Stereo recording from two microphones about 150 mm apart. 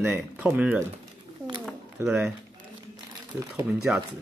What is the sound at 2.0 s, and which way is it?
Speech, 10° right (ahead or behind).